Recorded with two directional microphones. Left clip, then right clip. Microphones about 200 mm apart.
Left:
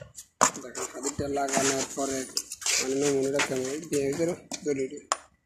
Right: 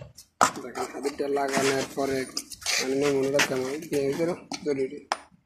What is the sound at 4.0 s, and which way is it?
Speech, 20° left (ahead or behind).